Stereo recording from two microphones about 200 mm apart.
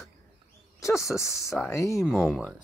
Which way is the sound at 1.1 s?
15° left (ahead or behind).